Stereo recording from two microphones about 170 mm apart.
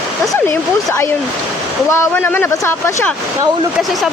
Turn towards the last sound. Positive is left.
turn(degrees=15)  # may be behind; listen again after turning